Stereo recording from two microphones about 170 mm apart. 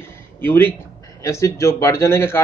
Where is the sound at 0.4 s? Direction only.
10° left (ahead or behind).